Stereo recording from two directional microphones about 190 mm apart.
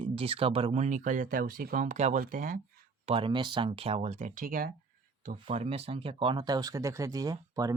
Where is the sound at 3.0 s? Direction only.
30° right (ahead or behind); by 4.7 s 45° right (ahead or behind).